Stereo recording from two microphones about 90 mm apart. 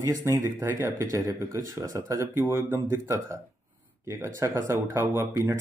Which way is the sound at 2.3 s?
25° right (ahead or behind).